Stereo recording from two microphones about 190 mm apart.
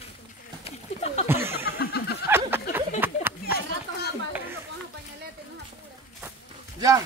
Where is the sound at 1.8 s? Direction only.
55° left (ahead or behind).